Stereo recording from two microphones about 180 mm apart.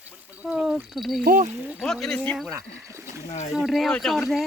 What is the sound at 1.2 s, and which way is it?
Speech, 50° right (ahead or behind).